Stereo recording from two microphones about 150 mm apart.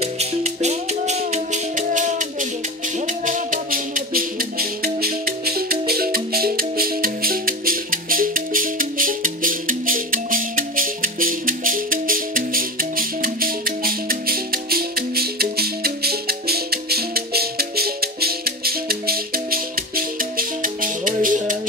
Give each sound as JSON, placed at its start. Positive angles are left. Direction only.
{"t": 0.0, "sound": "music", "side_deg": -45}